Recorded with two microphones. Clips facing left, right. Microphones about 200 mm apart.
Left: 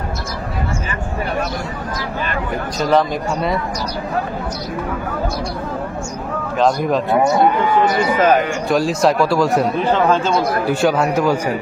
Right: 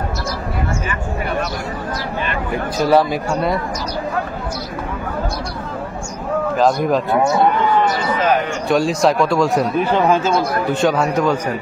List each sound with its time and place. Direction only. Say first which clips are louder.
2.8 s speech: right 1 dB; 5° right (ahead or behind)
6.6 s speech: left 1 dB; centre (ahead or behind)
8.2 s a man's voice: left 3 dB; 45° left (ahead or behind)
8.6 s speech: right 2 dB; centre (ahead or behind)
9.8 s speech: even; 10° right (ahead or behind)
10.7 s a man's voice: even; 5° left (ahead or behind)